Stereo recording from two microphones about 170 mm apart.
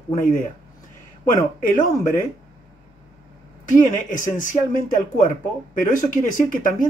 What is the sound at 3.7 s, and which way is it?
Speech, 50° left (ahead or behind).